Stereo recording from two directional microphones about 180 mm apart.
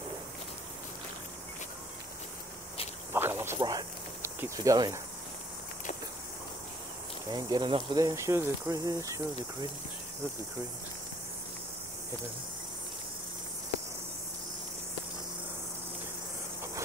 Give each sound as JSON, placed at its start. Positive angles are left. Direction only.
{"t": 3.1, "sound": "a sound", "side_deg": -15}
{"t": 4.4, "sound": "speech", "side_deg": -20}
{"t": 7.2, "sound": "speech", "side_deg": -25}